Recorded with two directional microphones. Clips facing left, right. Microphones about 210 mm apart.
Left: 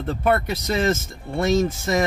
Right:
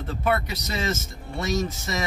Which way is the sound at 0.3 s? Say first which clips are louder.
Left 5 dB; 50° left (ahead or behind).